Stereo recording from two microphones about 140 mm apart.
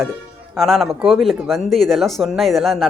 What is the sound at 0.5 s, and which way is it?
Speech, centre (ahead or behind).